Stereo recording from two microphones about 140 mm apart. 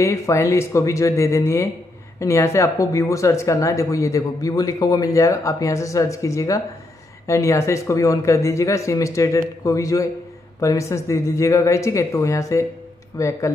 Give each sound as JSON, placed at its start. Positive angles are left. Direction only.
{"t": 0.0, "sound": "speech", "side_deg": 20}